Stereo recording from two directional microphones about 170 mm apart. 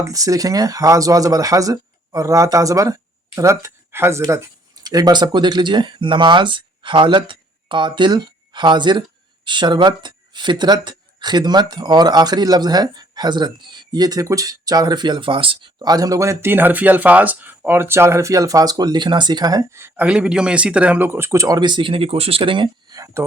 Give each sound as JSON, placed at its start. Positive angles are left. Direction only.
{"t": 0.0, "sound": "speech", "side_deg": -20}